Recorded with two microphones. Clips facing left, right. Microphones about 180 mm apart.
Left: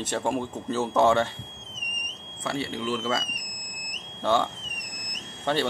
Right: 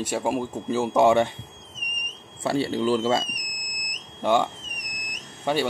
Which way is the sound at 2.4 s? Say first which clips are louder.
Right 7 dB; 30° right (ahead or behind).